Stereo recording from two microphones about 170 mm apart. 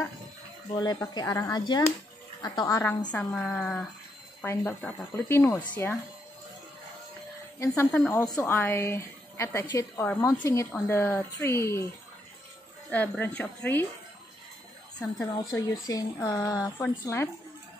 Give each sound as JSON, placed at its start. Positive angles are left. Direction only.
{"t": 0.7, "sound": "a woman's voice", "side_deg": 25}
{"t": 7.6, "sound": "a woman's voice", "side_deg": 15}
{"t": 12.9, "sound": "a woman's voice", "side_deg": 10}
{"t": 15.1, "sound": "a woman's voice", "side_deg": 20}